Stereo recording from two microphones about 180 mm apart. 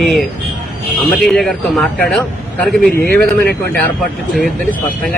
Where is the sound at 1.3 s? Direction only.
Centre (ahead or behind).